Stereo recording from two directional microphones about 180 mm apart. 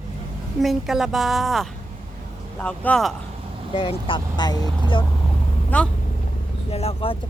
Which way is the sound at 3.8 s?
30° left (ahead or behind).